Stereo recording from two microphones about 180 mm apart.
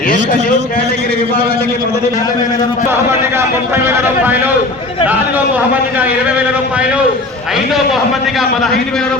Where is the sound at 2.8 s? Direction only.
15° right (ahead or behind).